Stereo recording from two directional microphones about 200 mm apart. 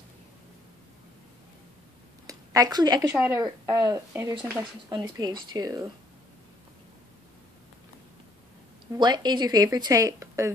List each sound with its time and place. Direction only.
2.2 s a woman's voice: 15° right (ahead or behind)
8.9 s speech: 20° right (ahead or behind)